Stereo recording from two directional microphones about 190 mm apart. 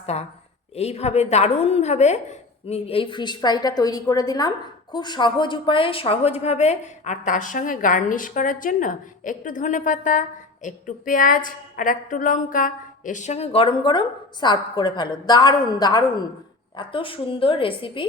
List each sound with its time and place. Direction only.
0.0 s a woman's voice: 35° left (ahead or behind)